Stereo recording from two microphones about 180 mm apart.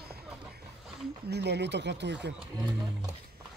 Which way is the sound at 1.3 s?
70° right (ahead or behind).